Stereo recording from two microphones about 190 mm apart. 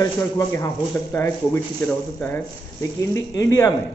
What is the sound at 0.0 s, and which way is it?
Speech, 15° left (ahead or behind).